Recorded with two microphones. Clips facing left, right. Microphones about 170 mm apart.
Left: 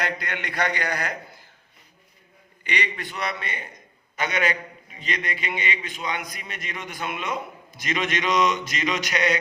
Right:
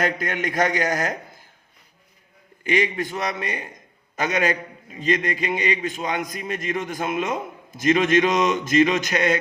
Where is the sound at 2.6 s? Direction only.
45° right (ahead or behind).